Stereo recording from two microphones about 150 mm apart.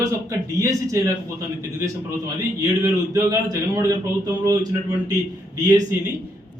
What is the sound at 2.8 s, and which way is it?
A man's voice, 25° right (ahead or behind).